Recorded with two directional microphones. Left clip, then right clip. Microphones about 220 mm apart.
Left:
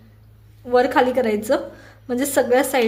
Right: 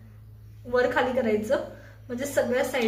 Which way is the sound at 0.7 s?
45° left (ahead or behind).